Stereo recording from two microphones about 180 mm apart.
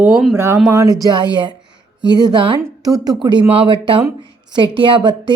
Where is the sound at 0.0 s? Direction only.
5° right (ahead or behind).